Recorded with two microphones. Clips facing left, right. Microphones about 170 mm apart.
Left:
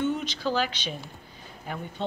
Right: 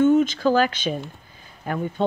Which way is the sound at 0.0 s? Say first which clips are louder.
Right 11 dB; 50° right (ahead or behind).